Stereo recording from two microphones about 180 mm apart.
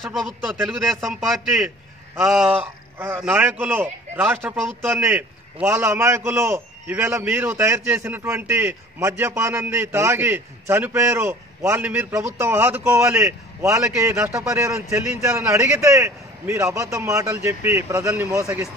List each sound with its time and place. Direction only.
0.0 s a man's voice: centre (ahead or behind); by 18.7 s 15° right (ahead or behind)